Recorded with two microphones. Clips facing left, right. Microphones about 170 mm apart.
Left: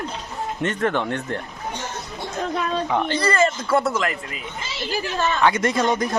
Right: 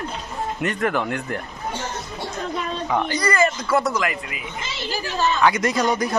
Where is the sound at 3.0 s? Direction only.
25° left (ahead or behind).